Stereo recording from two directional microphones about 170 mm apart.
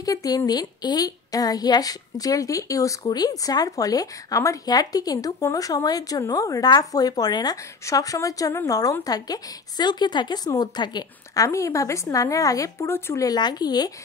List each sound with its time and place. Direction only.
0.0 s a woman's voice: 20° left (ahead or behind)